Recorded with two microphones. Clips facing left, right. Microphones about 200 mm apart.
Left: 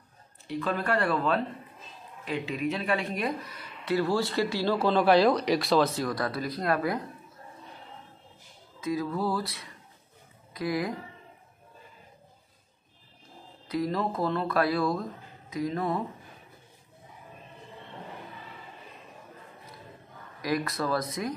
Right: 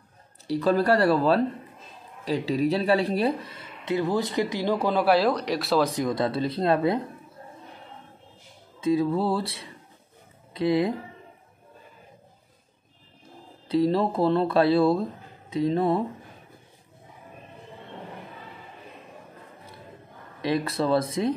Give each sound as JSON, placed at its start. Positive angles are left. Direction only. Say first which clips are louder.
{"t": 0.5, "sound": "speech", "louder": "right 8 dB", "side_deg": -35}
{"t": 5.9, "sound": "speech", "louder": "right 5 dB", "side_deg": -20}
{"t": 8.8, "sound": "speech", "louder": "right 6 dB", "side_deg": -25}
{"t": 13.7, "sound": "speech", "louder": "right 7 dB", "side_deg": -30}
{"t": 20.4, "sound": "speech", "louder": "right 4 dB", "side_deg": -30}